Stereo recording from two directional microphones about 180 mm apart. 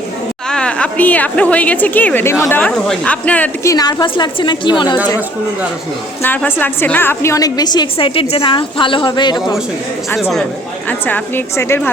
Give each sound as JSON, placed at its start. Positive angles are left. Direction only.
{"t": 0.5, "sound": "a woman's voice", "side_deg": 5}
{"t": 6.2, "sound": "a woman's voice", "side_deg": 10}
{"t": 10.2, "sound": "speech", "side_deg": 0}
{"t": 10.8, "sound": "a woman's voice", "side_deg": 10}